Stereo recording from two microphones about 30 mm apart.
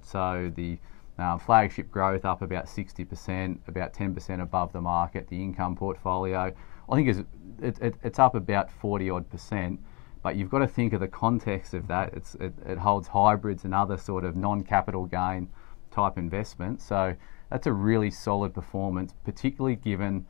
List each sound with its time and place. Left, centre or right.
0.1 s speech: centre
10.4 s speech: centre